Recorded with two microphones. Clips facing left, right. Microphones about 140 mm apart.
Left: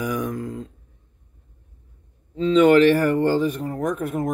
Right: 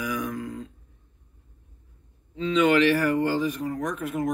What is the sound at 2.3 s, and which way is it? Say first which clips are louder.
Speech: left 6 dB; 40° left (ahead or behind).